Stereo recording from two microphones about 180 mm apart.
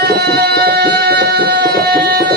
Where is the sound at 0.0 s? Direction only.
60° right (ahead or behind).